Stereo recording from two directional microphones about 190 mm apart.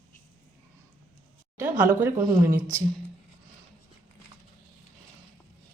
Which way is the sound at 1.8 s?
10° right (ahead or behind).